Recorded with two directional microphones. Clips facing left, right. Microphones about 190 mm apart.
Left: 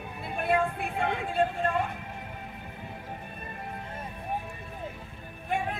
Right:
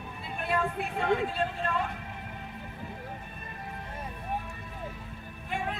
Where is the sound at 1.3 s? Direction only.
50° left (ahead or behind).